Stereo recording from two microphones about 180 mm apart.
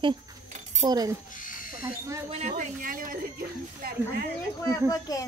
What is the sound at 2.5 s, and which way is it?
Speech, 50° right (ahead or behind).